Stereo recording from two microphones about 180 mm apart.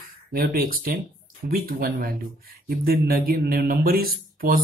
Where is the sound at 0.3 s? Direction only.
55° right (ahead or behind).